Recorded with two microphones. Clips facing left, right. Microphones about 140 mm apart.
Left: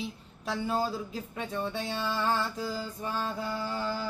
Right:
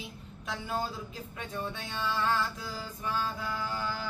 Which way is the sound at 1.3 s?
35° left (ahead or behind).